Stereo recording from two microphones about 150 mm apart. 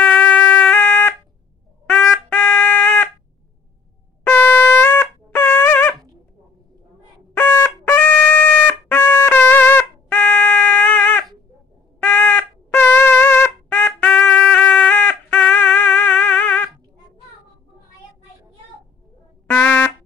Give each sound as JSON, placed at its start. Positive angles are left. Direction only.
{"t": 0.0, "sound": "music", "side_deg": 10}
{"t": 1.9, "sound": "trumpet", "side_deg": 10}
{"t": 4.3, "sound": "trumpet", "side_deg": 15}
{"t": 7.3, "sound": "trumpet", "side_deg": 10}
{"t": 12.0, "sound": "a sound", "side_deg": 10}
{"t": 19.5, "sound": "trumpet", "side_deg": 10}